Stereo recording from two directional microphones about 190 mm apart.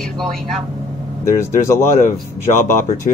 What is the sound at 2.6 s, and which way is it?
Speech, 40° left (ahead or behind).